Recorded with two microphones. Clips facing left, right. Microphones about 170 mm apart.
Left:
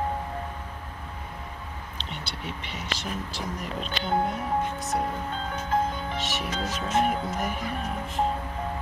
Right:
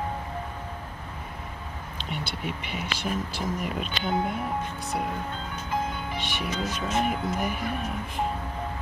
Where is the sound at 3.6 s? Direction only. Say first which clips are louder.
Right 2 dB; 5° right (ahead or behind).